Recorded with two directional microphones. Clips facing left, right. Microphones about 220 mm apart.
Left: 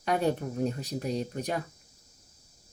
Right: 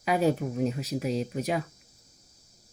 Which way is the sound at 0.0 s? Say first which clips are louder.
Right 3 dB; 5° right (ahead or behind).